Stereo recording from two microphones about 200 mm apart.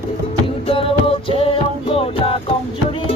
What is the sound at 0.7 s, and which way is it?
Music, 25° left (ahead or behind).